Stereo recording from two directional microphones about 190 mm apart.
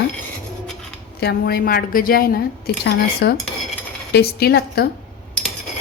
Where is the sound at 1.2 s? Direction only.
55° left (ahead or behind).